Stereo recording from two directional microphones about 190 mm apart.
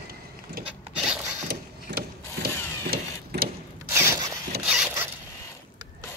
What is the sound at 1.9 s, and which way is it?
Mechanisms, 65° right (ahead or behind).